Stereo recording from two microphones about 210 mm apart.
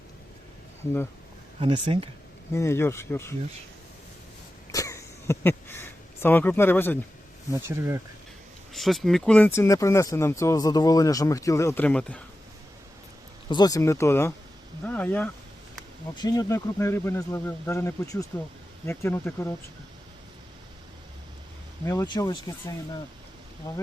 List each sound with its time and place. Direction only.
1.5 s speech: 25° right (ahead or behind)
2.5 s speech: 10° left (ahead or behind)
4.7 s a sound: 15° left (ahead or behind)
7.5 s speech: 15° right (ahead or behind)
8.7 s speech: centre (ahead or behind)
13.5 s speech: 20° left (ahead or behind)
16.1 s speech: 20° left (ahead or behind)
21.8 s speech: 20° left (ahead or behind)